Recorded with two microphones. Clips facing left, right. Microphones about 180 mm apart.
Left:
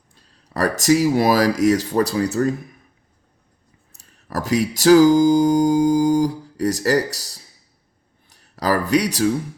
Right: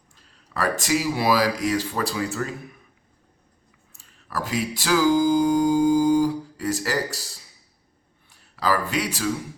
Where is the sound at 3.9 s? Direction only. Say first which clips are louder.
Left 4 dB; 40° left (ahead or behind).